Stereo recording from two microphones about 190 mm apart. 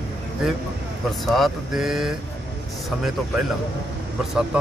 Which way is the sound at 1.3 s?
Centre (ahead or behind).